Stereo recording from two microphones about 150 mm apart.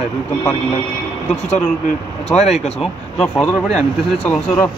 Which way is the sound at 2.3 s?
45° left (ahead or behind).